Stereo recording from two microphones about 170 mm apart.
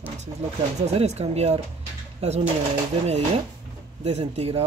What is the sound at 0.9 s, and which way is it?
Speech, 40° right (ahead or behind).